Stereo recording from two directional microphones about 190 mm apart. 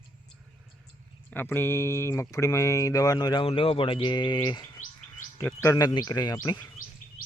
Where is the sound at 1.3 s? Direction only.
10° left (ahead or behind).